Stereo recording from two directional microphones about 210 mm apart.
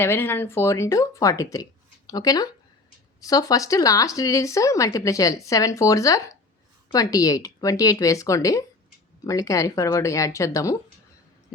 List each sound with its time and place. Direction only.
0.0 s speech: 10° left (ahead or behind)